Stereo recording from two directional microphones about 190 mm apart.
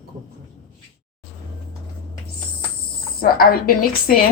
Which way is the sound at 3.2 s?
50° left (ahead or behind).